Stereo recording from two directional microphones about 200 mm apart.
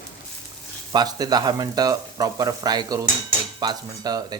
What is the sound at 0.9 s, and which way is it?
Speech, 20° right (ahead or behind).